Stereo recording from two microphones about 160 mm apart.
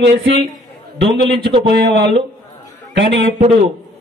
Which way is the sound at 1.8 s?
90° right.